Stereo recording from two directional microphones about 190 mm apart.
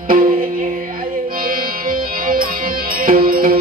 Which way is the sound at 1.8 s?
50° right (ahead or behind).